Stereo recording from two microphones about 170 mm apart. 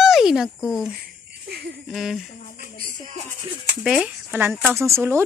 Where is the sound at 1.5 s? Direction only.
80° right.